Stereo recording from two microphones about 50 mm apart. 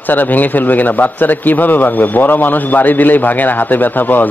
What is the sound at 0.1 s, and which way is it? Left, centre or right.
A man's voice, left.